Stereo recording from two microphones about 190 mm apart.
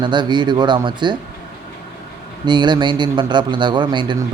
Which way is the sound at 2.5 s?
25° right (ahead or behind).